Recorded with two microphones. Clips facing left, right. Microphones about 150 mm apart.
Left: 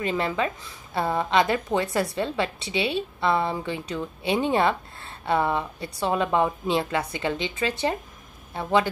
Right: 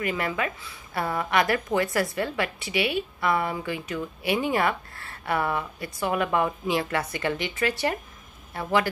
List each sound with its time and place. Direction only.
0.0 s a woman's voice: 25° left (ahead or behind)